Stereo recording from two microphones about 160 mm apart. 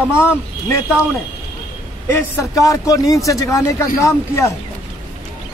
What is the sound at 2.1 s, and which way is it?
A man's voice, 20° left (ahead or behind).